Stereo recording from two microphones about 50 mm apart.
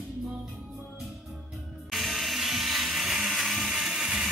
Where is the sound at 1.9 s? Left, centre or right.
Centre.